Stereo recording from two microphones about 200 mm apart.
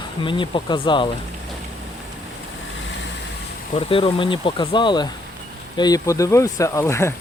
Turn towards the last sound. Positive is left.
turn(degrees=15)  # may be behind; listen again after turning